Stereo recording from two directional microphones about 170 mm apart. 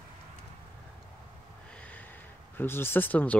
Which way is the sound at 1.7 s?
10° left (ahead or behind).